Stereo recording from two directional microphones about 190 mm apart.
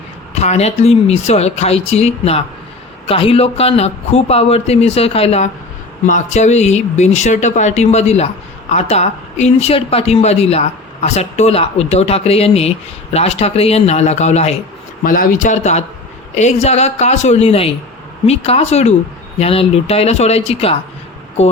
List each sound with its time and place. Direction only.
0.3 s speech: 35° left (ahead or behind)
15.0 s speech: 45° left (ahead or behind); by 21.5 s 30° left (ahead or behind)